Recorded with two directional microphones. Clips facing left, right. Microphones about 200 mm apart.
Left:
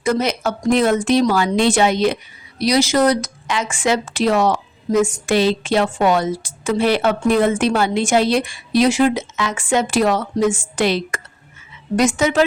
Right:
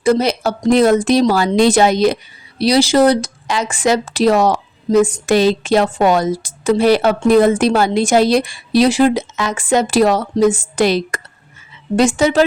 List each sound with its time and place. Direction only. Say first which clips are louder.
0.0 s speech: right 4 dB; 30° right (ahead or behind)